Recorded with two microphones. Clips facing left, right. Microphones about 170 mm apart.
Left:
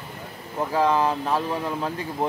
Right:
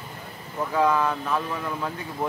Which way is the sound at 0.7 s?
30° left (ahead or behind).